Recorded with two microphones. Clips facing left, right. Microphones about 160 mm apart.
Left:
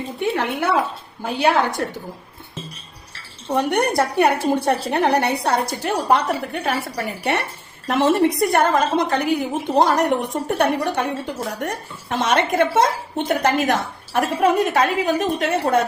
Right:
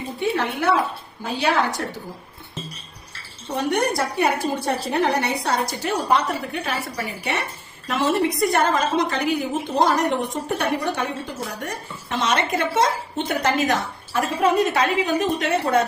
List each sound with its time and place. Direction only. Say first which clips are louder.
0.2 s a woman's voice: left 1 dB; 55° left (ahead or behind)
3.5 s a woman's voice: left 3 dB; 60° left (ahead or behind)